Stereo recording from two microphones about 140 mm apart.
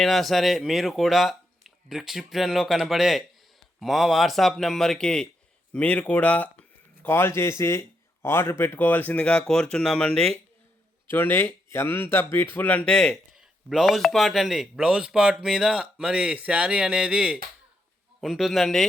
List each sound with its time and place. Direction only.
0.0 s speech: centre (ahead or behind)